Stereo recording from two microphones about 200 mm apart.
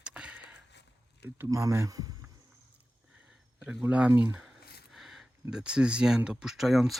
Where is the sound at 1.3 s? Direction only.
15° right (ahead or behind).